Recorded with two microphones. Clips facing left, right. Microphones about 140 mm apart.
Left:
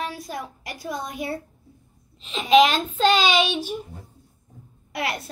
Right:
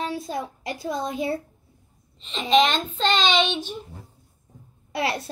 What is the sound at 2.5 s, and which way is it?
A child's voice, 5° left (ahead or behind).